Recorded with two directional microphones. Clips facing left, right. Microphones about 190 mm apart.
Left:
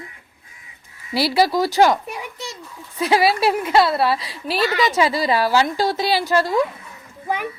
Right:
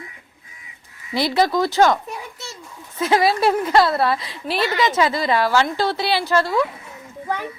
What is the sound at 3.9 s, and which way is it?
Speech, 25° left (ahead or behind).